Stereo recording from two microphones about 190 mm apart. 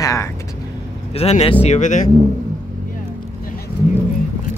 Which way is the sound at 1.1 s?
35° left (ahead or behind).